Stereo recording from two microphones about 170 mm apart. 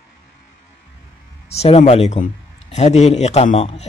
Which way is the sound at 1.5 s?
40° left (ahead or behind).